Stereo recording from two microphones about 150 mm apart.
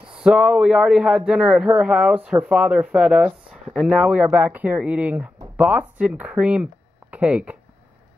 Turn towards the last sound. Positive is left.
turn(degrees=-5)  # may be behind; listen again after turning